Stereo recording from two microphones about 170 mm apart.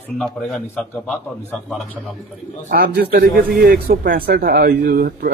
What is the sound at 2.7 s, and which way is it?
A man's voice, 70° right (ahead or behind).